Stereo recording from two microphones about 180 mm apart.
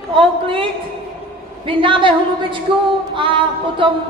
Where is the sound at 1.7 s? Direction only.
30° right (ahead or behind).